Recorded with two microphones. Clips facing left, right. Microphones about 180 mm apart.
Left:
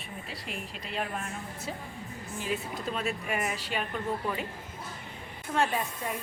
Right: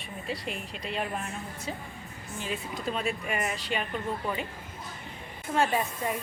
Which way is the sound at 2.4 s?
Centre (ahead or behind).